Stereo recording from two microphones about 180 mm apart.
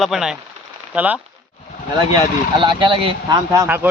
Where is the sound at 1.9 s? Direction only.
25° right (ahead or behind).